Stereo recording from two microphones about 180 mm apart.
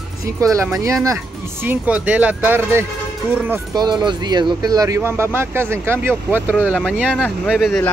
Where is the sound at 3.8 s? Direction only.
25° right (ahead or behind).